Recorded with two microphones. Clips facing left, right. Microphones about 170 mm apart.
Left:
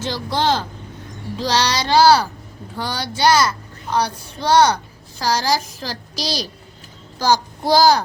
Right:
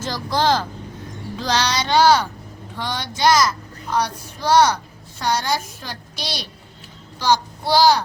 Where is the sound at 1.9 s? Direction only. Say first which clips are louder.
Left 2 dB; 35° left (ahead or behind).